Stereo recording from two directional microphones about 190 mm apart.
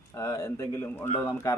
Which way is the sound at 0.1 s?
15° left (ahead or behind).